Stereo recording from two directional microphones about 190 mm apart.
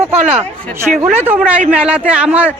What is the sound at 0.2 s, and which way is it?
Speech, 35° right (ahead or behind).